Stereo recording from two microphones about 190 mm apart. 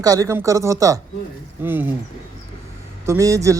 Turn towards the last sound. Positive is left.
turn(degrees=-15)  # may be behind; listen again after turning